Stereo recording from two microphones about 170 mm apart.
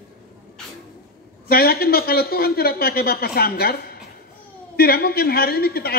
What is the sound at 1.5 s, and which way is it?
A woman's voice, 65° left (ahead or behind).